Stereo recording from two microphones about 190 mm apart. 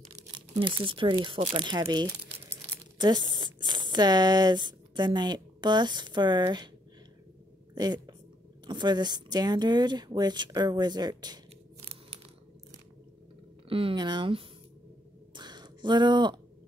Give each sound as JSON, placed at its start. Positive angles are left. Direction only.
{"t": 0.3, "sound": "speech", "side_deg": -25}
{"t": 7.7, "sound": "speech", "side_deg": -20}
{"t": 13.7, "sound": "speech", "side_deg": -30}
{"t": 15.3, "sound": "a sound", "side_deg": -20}